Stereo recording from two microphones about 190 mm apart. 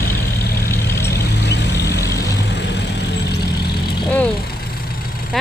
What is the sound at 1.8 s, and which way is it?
Vehicle, 15° left (ahead or behind).